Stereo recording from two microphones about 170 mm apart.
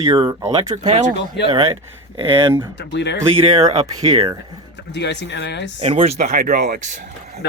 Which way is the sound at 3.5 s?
35° right (ahead or behind).